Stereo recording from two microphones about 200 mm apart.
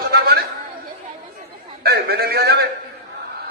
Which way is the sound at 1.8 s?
50° right (ahead or behind).